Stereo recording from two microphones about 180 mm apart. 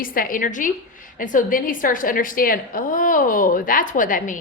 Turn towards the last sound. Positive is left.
turn(degrees=50)  # may be behind; listen again after turning